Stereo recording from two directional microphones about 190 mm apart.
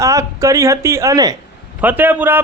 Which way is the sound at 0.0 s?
15° right (ahead or behind).